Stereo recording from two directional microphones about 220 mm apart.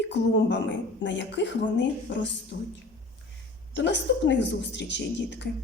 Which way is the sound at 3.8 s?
55° left (ahead or behind).